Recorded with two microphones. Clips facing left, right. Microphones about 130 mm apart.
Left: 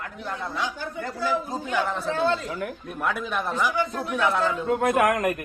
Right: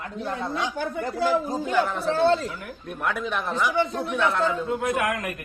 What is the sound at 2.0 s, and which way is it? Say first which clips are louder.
Speech: right 4 dB; 35° right (ahead or behind).